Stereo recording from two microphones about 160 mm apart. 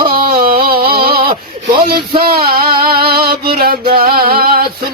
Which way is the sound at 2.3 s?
70° right (ahead or behind).